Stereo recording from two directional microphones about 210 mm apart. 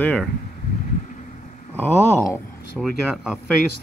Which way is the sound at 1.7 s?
10° left (ahead or behind).